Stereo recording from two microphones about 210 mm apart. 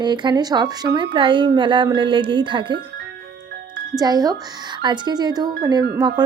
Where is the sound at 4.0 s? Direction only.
20° right (ahead or behind).